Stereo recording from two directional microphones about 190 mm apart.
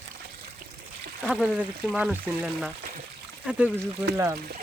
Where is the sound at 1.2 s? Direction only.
Centre (ahead or behind).